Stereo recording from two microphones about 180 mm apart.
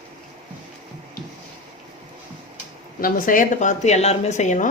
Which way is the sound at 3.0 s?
50° left (ahead or behind).